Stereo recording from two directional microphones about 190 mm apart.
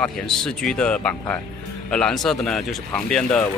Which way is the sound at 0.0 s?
5° left (ahead or behind).